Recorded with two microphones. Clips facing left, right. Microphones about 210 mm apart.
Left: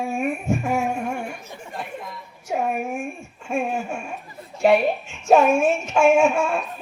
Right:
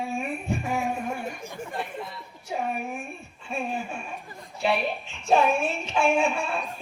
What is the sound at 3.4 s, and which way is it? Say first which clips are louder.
Speech: left 6 dB; 45° left (ahead or behind).